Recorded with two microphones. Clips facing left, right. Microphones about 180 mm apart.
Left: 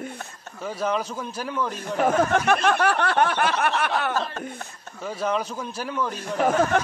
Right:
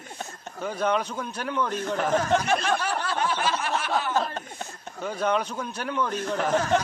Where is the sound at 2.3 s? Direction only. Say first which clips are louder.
Left 3 dB; 60° left (ahead or behind).